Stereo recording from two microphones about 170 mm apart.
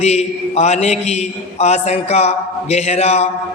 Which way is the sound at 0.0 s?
40° left (ahead or behind).